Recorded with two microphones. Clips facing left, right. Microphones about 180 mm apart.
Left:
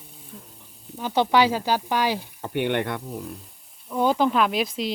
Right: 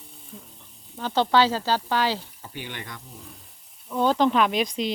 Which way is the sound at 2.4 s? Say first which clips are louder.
Left 13 dB; 60° left (ahead or behind).